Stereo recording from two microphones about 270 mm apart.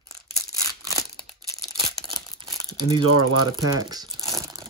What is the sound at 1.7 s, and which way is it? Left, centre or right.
Crumpling, centre.